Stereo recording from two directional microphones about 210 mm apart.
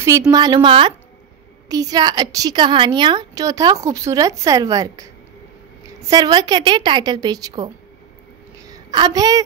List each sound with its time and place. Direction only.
0.3 s a woman's voice: 20° right (ahead or behind)
6.0 s a woman's voice: 20° right (ahead or behind)
8.6 s a sound: 20° right (ahead or behind)